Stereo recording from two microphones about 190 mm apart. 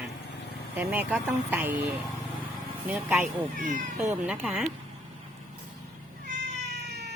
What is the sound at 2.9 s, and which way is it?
Speech, 5° right (ahead or behind).